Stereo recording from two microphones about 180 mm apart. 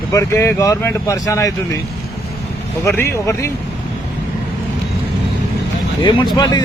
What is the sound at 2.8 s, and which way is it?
Speech, 15° left (ahead or behind).